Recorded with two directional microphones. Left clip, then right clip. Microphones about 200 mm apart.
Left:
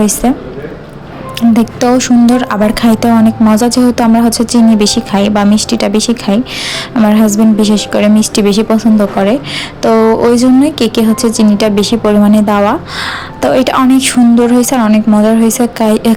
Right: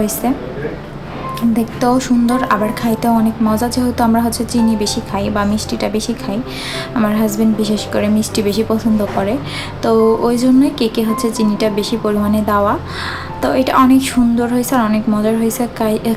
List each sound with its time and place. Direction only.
0.0 s a woman's voice: 35° left (ahead or behind)
1.4 s a woman's voice: 35° left (ahead or behind)